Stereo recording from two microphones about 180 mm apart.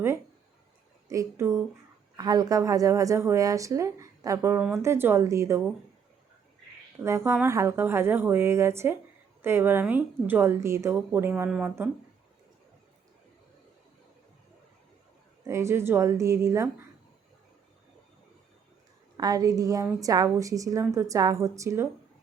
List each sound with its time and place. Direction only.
1.0 s a woman's voice: 15° right (ahead or behind)
7.0 s a woman's voice: 15° right (ahead or behind)
15.4 s a woman's voice: 15° right (ahead or behind)
19.1 s a woman's voice: 20° right (ahead or behind)